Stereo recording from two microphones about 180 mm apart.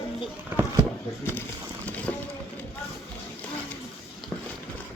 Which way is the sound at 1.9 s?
10° left (ahead or behind).